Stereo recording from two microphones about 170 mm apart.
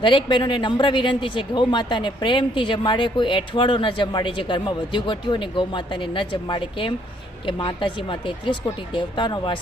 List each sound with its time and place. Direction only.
0.0 s a man's voice: 30° left (ahead or behind)